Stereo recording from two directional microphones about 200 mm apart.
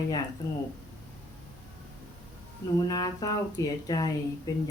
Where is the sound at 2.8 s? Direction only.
20° left (ahead or behind).